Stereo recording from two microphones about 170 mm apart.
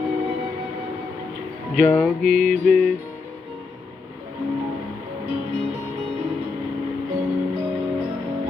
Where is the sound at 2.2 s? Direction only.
55° right (ahead or behind).